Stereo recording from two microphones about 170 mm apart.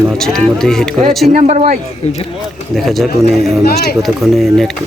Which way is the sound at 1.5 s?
40° right (ahead or behind).